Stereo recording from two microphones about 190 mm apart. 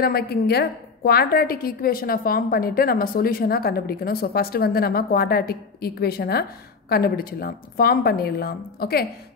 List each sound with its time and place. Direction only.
0.0 s a woman's voice: 55° left (ahead or behind)